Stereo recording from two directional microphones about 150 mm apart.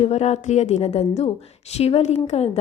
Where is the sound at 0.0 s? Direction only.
45° left (ahead or behind).